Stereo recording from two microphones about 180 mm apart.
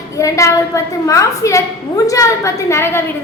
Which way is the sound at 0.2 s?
15° left (ahead or behind).